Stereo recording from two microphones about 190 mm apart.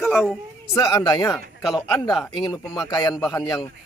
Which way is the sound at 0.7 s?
15° left (ahead or behind).